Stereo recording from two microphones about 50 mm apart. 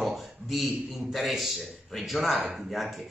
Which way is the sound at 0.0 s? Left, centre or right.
Centre.